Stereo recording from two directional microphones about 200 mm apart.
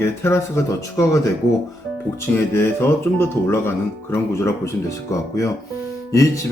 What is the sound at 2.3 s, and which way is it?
Speech, 10° left (ahead or behind).